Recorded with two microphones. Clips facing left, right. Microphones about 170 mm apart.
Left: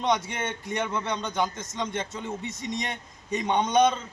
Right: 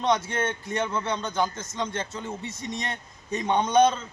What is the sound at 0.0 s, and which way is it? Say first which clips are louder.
A man's voice: right 2 dB; 15° left (ahead or behind).